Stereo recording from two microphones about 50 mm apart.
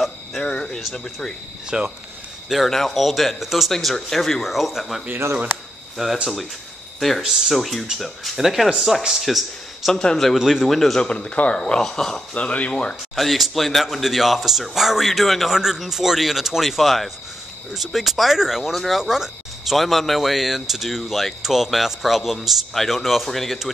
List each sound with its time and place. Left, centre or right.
0.4 s speech: centre
1.7 s speech: centre
2.5 s speech: centre
3.7 s speech: centre
7.0 s speech: centre
11.1 s speech: left
11.6 s speech: centre
12.4 s speech: left
13.1 s speech: centre